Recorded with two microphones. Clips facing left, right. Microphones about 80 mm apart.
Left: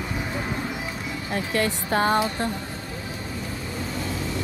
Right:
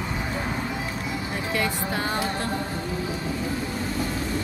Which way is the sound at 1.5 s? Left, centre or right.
Left.